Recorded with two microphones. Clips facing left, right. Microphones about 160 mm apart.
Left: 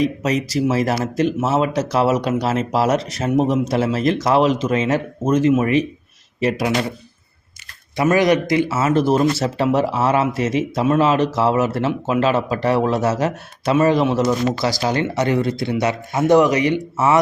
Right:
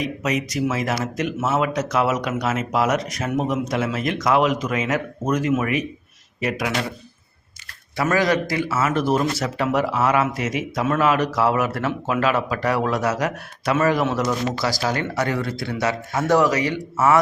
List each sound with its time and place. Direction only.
0.0 s a man's voice: 30° left (ahead or behind)
7.9 s speech: 20° left (ahead or behind)